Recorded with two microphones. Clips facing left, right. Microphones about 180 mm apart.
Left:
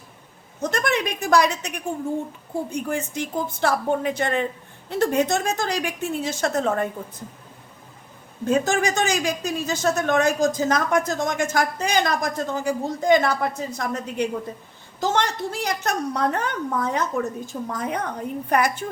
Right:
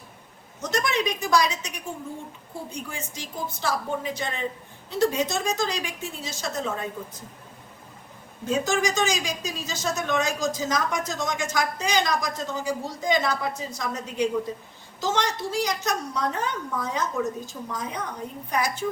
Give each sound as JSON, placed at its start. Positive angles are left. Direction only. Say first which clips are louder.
{"t": 0.6, "sound": "speech", "louder": "left 2 dB", "side_deg": 55}
{"t": 8.4, "sound": "speech", "louder": "left 4 dB", "side_deg": 55}